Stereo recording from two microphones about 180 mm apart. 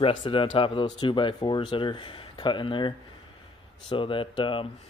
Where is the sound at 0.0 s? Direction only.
30° left (ahead or behind).